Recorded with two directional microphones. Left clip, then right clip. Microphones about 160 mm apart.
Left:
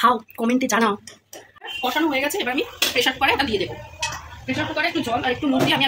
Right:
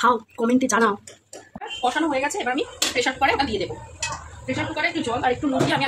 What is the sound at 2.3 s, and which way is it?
Speech, 15° right (ahead or behind).